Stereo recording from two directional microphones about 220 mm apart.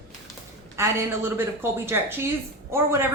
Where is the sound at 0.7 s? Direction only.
10° right (ahead or behind).